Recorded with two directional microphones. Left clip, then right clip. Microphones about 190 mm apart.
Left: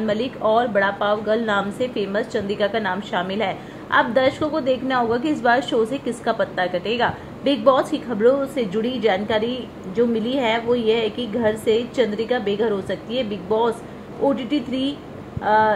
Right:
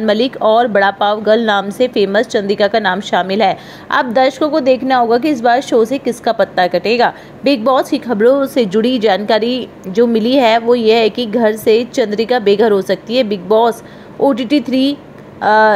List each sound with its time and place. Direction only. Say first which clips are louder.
0.0 s a woman's voice: right 9 dB; 30° right (ahead or behind)